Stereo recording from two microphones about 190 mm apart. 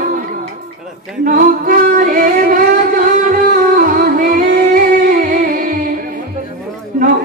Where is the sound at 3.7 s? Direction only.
45° right (ahead or behind).